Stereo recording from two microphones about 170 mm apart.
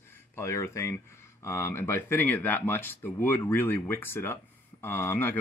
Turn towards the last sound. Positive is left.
turn(degrees=10)  # may be behind; listen again after turning